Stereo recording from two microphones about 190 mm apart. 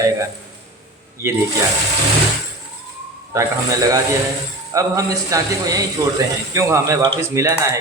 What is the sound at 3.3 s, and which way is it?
A man's voice, 15° right (ahead or behind).